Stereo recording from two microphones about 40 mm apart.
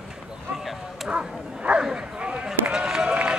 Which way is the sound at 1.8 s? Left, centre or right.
Right.